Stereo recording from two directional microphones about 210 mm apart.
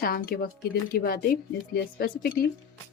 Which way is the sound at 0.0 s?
45° left (ahead or behind).